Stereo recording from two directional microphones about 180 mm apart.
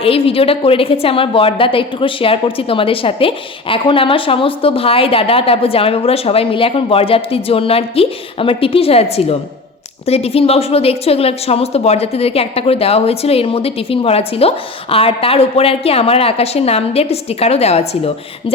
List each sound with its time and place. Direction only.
0.0 s a woman's voice: 30° left (ahead or behind)